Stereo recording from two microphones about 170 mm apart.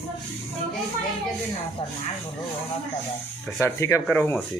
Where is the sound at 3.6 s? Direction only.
15° left (ahead or behind).